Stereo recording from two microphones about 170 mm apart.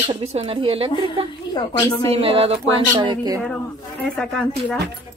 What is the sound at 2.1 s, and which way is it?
Speech, 35° right (ahead or behind).